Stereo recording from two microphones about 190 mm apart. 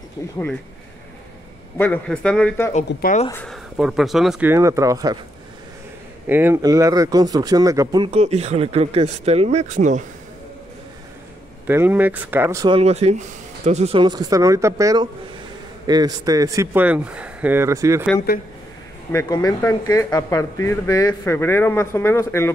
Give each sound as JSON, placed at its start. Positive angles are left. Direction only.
{"t": 0.2, "sound": "speech", "side_deg": 20}
{"t": 1.8, "sound": "speech", "side_deg": 5}
{"t": 2.7, "sound": "speech", "side_deg": 40}
{"t": 3.4, "sound": "speech", "side_deg": 0}
{"t": 6.2, "sound": "speech", "side_deg": -10}
{"t": 8.2, "sound": "speech", "side_deg": -35}
{"t": 11.6, "sound": "speech", "side_deg": -10}
{"t": 12.7, "sound": "speech", "side_deg": -35}
{"t": 18.3, "sound": "speech", "side_deg": 55}
{"t": 19.1, "sound": "speech", "side_deg": 20}